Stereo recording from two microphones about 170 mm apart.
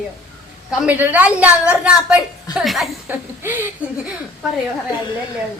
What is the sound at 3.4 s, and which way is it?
Child singing, 10° right (ahead or behind).